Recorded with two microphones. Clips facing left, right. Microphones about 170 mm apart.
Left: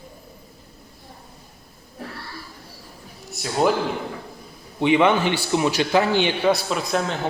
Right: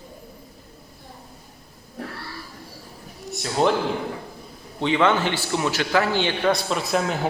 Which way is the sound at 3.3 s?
5° left (ahead or behind).